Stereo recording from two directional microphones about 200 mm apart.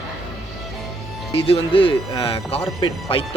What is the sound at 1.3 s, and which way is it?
Speech, 25° left (ahead or behind).